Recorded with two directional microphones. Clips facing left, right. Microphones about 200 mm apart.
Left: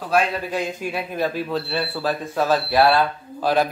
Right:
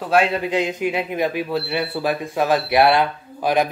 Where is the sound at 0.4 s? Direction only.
20° right (ahead or behind).